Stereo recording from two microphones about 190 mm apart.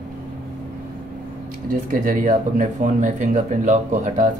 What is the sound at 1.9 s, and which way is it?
Speech, 45° right (ahead or behind).